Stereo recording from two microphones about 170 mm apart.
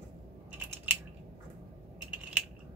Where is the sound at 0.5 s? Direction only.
10° right (ahead or behind).